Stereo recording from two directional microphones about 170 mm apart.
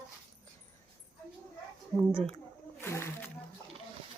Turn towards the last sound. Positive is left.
turn(degrees=15)  # may be behind; listen again after turning